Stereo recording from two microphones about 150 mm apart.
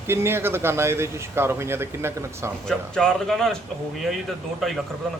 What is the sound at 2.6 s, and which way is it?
Speech, 5° left (ahead or behind).